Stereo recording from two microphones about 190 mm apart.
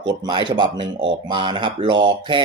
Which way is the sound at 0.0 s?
20° right (ahead or behind).